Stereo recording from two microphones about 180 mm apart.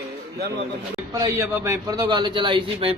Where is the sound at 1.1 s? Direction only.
20° right (ahead or behind).